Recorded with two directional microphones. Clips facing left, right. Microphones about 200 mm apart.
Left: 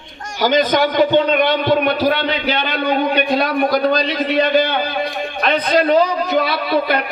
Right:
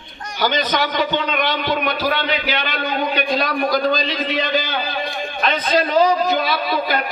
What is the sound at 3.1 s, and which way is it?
A man's voice, 60° left (ahead or behind).